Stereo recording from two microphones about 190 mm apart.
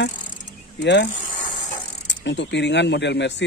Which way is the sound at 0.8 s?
65° left (ahead or behind).